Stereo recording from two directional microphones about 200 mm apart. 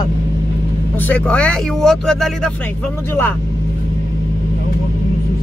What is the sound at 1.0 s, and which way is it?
Speech, 5° left (ahead or behind).